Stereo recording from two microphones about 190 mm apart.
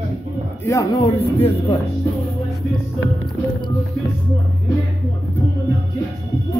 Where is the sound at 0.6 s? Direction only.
15° left (ahead or behind).